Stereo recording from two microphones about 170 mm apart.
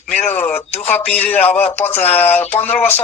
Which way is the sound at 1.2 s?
10° left (ahead or behind).